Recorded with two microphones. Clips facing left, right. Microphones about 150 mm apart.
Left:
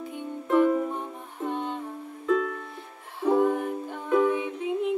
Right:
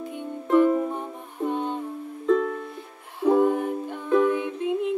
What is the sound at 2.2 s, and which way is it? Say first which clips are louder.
Music: right 3 dB; 35° right (ahead or behind).